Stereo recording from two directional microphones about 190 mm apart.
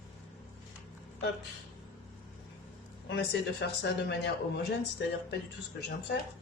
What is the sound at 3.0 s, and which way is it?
A man's voice, 65° left (ahead or behind).